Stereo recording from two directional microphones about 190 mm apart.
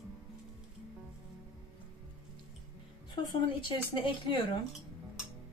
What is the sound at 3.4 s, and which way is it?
Speech, 25° left (ahead or behind).